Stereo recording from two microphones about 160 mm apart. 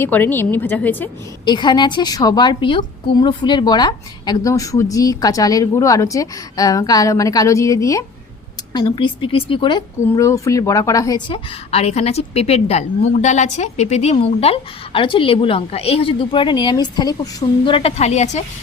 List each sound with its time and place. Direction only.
0.0 s a woman's voice: 10° left (ahead or behind)
1.5 s a woman's voice: 30° left (ahead or behind)
11.7 s a woman's voice: 40° left (ahead or behind)